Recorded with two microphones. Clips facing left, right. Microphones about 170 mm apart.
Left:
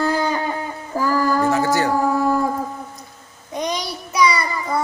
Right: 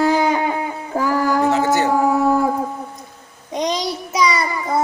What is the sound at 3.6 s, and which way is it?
Child singing, 25° right (ahead or behind).